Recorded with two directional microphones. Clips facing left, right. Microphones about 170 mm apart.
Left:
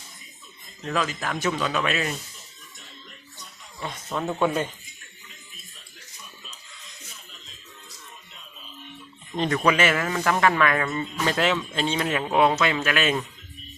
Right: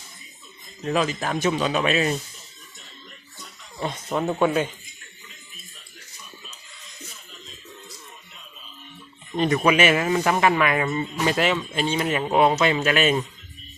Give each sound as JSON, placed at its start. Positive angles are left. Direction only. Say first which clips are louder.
{"t": 0.9, "sound": "speech", "louder": "right 4 dB", "side_deg": -20}
{"t": 4.1, "sound": "speech", "louder": "right 3 dB", "side_deg": -15}
{"t": 4.4, "sound": "speech", "louder": "right 2 dB", "side_deg": -5}
{"t": 9.3, "sound": "speech", "louder": "right 2 dB", "side_deg": -10}
{"t": 12.5, "sound": "speech", "louder": "right 3 dB", "side_deg": -20}